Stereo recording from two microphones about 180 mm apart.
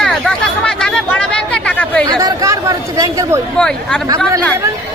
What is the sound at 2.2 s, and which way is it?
Speech, 20° right (ahead or behind).